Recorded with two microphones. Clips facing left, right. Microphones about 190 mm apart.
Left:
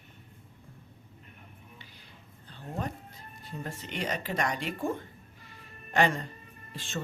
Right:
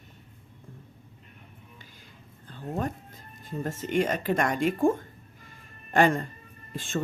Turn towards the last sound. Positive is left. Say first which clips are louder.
# right 7 dB
turn(degrees=-50)  # may be behind; listen again after turning